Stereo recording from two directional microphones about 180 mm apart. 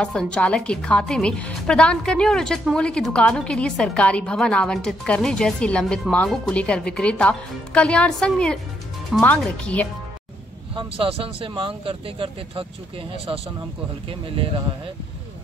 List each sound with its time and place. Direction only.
0.0 s a woman's voice: 5° left (ahead or behind)
10.7 s speech: 30° right (ahead or behind)
14.0 s speech: 30° right (ahead or behind)